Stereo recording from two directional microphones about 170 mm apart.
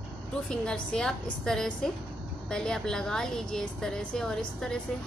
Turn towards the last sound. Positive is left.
turn(degrees=0)  # may be behind; listen again after turning